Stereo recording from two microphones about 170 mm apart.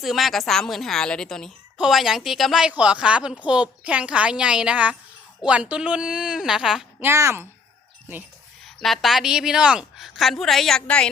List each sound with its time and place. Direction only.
0.0 s a woman's voice: centre (ahead or behind)
7.1 s speech: 15° right (ahead or behind)
8.6 s a woman's voice: centre (ahead or behind)